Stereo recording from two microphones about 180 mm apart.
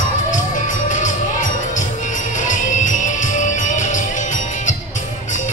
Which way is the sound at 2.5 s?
45° left (ahead or behind).